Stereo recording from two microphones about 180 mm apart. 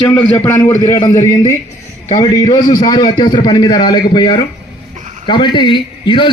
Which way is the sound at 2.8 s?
25° left (ahead or behind).